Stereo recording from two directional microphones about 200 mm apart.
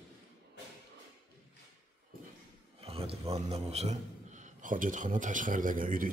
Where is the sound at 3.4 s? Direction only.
30° right (ahead or behind).